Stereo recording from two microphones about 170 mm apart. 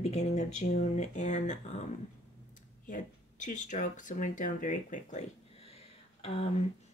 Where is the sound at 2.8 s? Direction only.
50° left (ahead or behind).